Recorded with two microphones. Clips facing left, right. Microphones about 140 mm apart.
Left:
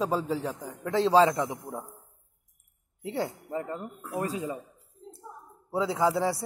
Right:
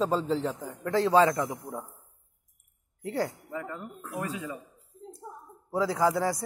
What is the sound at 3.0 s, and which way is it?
Speech, 25° left (ahead or behind).